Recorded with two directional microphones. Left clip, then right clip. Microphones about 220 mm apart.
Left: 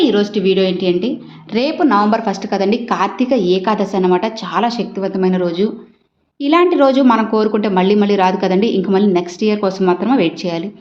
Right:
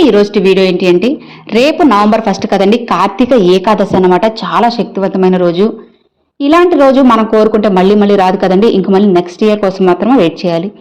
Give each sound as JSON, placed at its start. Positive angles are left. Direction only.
{"t": 0.0, "sound": "a woman's voice", "side_deg": -35}